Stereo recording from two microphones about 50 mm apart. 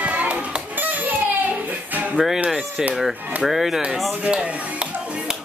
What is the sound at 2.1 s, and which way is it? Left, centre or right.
Music, centre.